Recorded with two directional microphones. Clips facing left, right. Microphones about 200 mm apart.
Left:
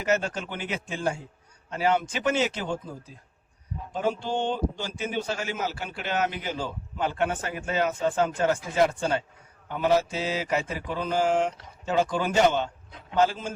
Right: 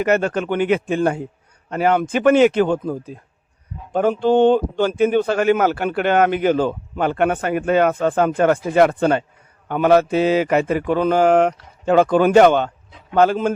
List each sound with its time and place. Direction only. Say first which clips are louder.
0.0 s speech: right 8 dB; 60° right (ahead or behind)